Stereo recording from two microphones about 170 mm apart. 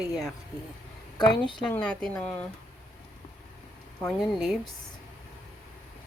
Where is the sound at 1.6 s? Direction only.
5° left (ahead or behind).